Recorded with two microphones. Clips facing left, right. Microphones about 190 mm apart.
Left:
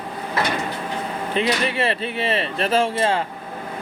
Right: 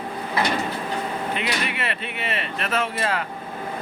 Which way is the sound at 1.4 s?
30° left (ahead or behind).